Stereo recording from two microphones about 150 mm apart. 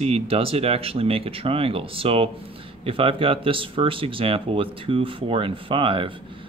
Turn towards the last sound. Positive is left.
turn(degrees=-35)  # may be behind; listen again after turning